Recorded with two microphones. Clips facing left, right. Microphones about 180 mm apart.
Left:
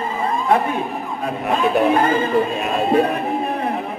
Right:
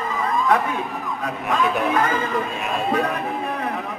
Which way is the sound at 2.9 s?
30° left (ahead or behind).